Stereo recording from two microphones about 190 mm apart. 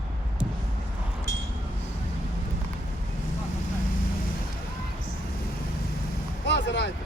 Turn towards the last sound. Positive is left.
turn(degrees=65)  # may be behind; listen again after turning